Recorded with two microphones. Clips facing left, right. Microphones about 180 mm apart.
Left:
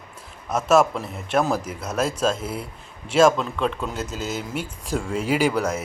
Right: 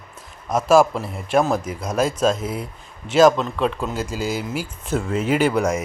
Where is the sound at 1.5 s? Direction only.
5° left (ahead or behind).